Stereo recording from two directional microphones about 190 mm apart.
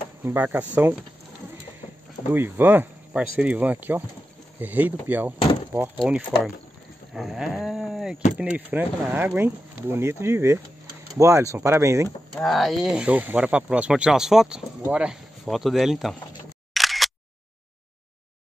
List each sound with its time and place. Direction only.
0.2 s speech: 10° right (ahead or behind)
2.3 s speech: 10° right (ahead or behind)
7.2 s a sound: centre (ahead or behind)
8.4 s speech: 5° right (ahead or behind)
12.4 s speech: centre (ahead or behind)
16.7 s single-lens reflex camera: centre (ahead or behind)